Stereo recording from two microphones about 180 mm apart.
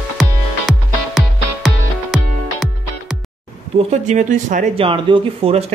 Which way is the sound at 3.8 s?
45° right (ahead or behind).